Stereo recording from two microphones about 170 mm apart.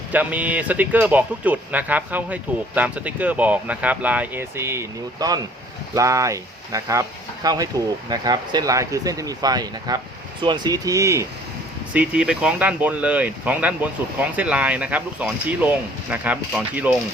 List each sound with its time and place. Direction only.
0.1 s speech: 10° right (ahead or behind)
11.9 s speech: 5° right (ahead or behind)